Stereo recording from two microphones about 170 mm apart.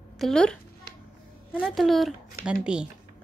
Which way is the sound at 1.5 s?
5° right (ahead or behind).